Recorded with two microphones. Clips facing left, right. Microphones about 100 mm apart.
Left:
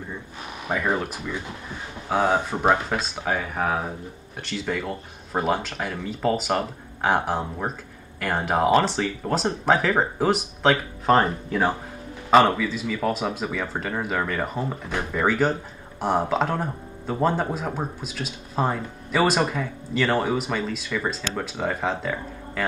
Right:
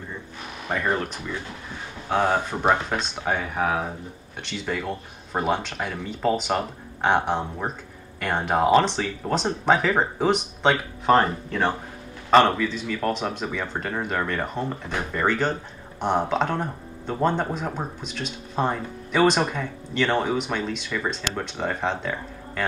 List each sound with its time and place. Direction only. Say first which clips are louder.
0.7 s speech: even; 5° left (ahead or behind)